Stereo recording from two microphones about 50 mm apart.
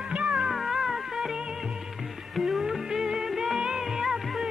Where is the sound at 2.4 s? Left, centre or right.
Centre.